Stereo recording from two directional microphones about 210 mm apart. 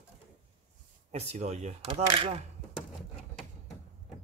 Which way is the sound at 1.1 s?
30° right (ahead or behind).